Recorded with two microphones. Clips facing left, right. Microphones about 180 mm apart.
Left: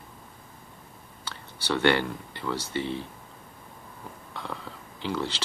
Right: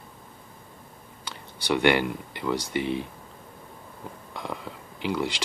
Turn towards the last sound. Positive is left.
turn(degrees=-15)  # may be behind; listen again after turning